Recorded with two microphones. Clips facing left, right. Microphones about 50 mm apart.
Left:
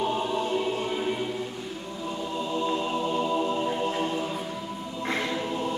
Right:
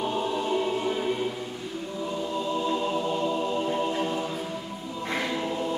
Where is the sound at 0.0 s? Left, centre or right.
Centre.